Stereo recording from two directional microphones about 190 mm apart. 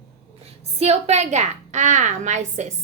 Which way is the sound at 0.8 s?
35° right (ahead or behind).